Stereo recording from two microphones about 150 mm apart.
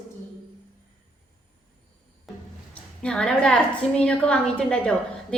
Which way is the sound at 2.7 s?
5° left (ahead or behind).